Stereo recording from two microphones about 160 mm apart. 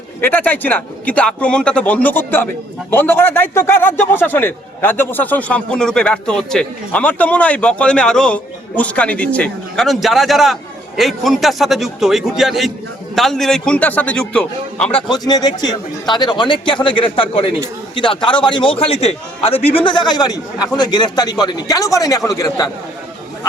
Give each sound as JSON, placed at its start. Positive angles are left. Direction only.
{"t": 0.2, "sound": "a man's voice", "side_deg": 10}
{"t": 15.1, "sound": "a man's voice", "side_deg": 25}